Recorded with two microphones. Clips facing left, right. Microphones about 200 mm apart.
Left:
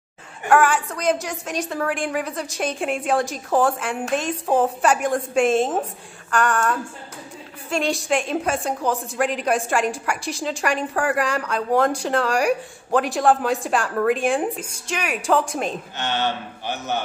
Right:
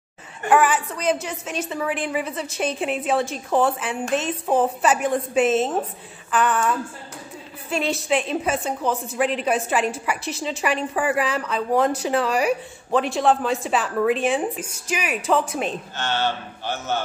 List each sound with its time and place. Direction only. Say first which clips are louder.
0.5 s a woman's voice: left 1 dB; 5° right (ahead or behind)
16.0 s a man's voice: even; 15° left (ahead or behind)